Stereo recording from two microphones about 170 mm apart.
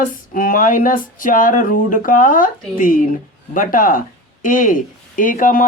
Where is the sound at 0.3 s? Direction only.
55° left (ahead or behind).